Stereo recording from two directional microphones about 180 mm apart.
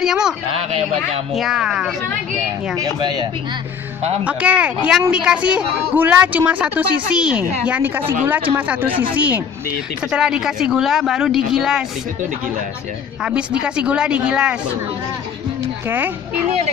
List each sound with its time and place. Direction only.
0.0 s speech: 5° right (ahead or behind)
0.6 s speech: 35° right (ahead or behind)
1.3 s speech: centre (ahead or behind)
2.8 s speech: 25° right (ahead or behind)
4.2 s a woman's voice: 5° right (ahead or behind)
13.2 s speech: 5° right (ahead or behind)